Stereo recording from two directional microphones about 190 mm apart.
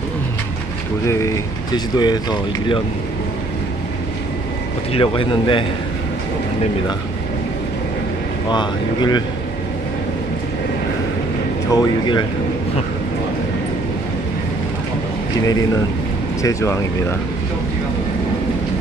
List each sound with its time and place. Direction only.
1.0 s speech: 15° left (ahead or behind)
4.9 s speech: 30° left (ahead or behind)
8.5 s speech: 25° left (ahead or behind)
11.7 s speech: 20° left (ahead or behind)
15.4 s speech: 20° left (ahead or behind)